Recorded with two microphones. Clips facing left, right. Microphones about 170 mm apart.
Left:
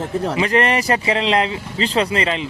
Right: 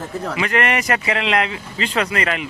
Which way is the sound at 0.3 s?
30° left (ahead or behind).